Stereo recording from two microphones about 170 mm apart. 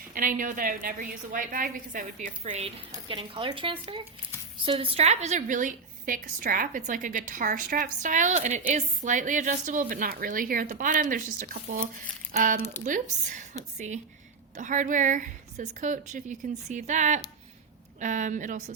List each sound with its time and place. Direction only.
0.1 s a woman's voice: 55° right (ahead or behind)